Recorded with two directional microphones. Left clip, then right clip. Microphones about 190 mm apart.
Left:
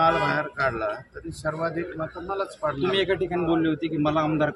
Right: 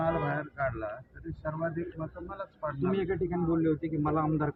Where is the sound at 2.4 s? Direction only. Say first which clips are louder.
Left 7 dB; 20° left (ahead or behind).